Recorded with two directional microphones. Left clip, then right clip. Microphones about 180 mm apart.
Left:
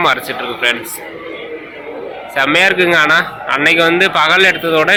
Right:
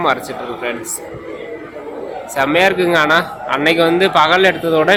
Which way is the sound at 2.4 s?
10° right (ahead or behind).